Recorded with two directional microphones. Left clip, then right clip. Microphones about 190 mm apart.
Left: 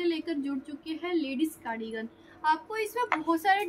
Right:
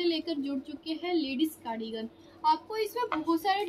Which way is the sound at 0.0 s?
15° right (ahead or behind).